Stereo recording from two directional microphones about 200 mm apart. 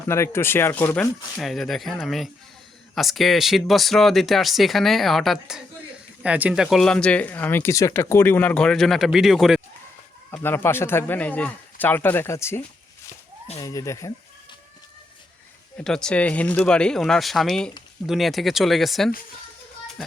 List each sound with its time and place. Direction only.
0.1 s speech: 10° left (ahead or behind)
1.4 s speech: centre (ahead or behind)
10.3 s speech: 10° left (ahead or behind)
15.8 s speech: 5° left (ahead or behind)